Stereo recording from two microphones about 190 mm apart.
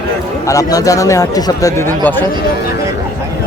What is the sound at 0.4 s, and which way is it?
Speech, 20° left (ahead or behind).